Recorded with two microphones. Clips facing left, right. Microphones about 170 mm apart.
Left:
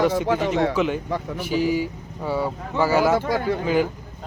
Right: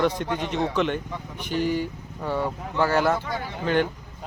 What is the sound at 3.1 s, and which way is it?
Speech, 90° left.